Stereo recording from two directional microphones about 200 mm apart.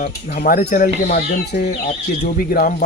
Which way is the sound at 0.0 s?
45° left (ahead or behind).